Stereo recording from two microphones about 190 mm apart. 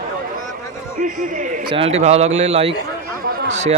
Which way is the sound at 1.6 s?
30° right (ahead or behind).